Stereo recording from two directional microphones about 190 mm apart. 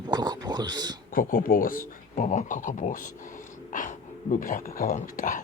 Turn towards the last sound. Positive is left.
turn(degrees=45)  # may be behind; listen again after turning